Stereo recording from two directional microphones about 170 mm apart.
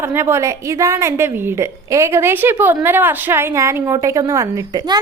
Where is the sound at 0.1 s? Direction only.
15° right (ahead or behind).